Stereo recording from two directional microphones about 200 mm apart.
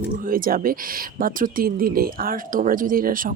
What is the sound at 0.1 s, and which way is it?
Speech, 45° right (ahead or behind).